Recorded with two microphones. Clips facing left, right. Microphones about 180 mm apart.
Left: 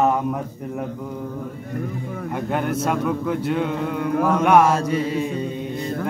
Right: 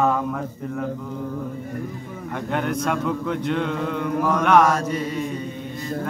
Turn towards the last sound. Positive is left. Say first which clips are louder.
# left 2 dB
turn(degrees=30)  # may be behind; listen again after turning